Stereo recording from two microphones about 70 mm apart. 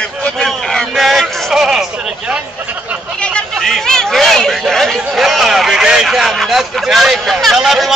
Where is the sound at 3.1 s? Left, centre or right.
Centre.